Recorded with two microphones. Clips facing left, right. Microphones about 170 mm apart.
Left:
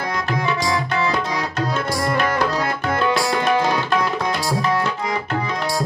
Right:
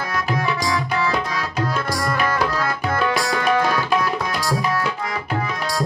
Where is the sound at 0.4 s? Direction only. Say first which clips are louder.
Left 3 dB; 20° left (ahead or behind).